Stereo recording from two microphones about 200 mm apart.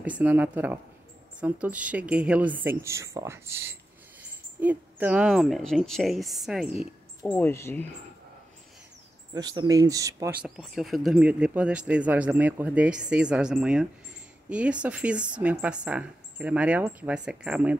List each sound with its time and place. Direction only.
0.0 s a woman's voice: 10° right (ahead or behind)
7.2 s speech: 10° left (ahead or behind)
9.3 s a woman's voice: 20° right (ahead or behind)
10.4 s speech: centre (ahead or behind)